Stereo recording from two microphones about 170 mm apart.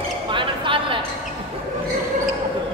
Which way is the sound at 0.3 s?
30° right (ahead or behind).